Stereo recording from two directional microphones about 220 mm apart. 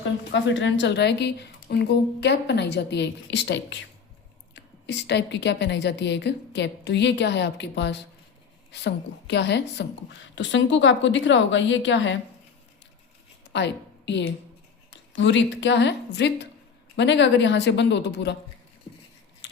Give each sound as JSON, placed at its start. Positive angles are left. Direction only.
{"t": 0.0, "sound": "a woman's voice", "side_deg": 55}
{"t": 13.5, "sound": "a woman's voice", "side_deg": 50}